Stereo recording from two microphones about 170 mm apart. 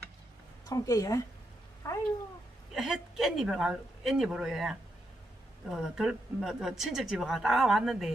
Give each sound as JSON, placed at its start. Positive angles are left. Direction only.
{"t": 0.7, "sound": "speech", "side_deg": 20}
{"t": 2.7, "sound": "a woman's voice", "side_deg": -5}